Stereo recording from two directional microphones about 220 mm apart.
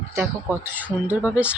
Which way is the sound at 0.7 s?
5° right (ahead or behind).